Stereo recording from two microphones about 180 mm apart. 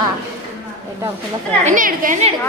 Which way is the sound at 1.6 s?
45° right (ahead or behind).